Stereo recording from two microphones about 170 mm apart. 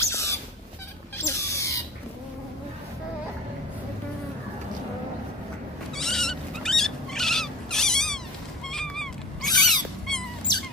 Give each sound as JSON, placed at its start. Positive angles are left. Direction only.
{"t": 0.0, "sound": "a sound", "side_deg": 15}
{"t": 1.1, "sound": "rodents", "side_deg": 15}
{"t": 5.9, "sound": "cat", "side_deg": 5}
{"t": 10.5, "sound": "wail", "side_deg": 25}